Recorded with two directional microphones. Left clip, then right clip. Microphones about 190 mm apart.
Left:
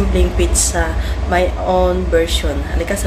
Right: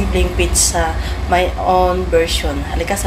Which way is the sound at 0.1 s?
10° left (ahead or behind).